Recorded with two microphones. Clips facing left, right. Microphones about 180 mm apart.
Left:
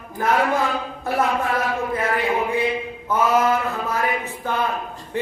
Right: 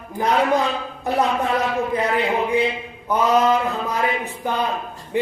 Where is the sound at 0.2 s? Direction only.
20° right (ahead or behind).